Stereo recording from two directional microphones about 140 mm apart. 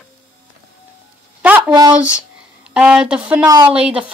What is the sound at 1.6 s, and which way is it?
Speech, 30° right (ahead or behind).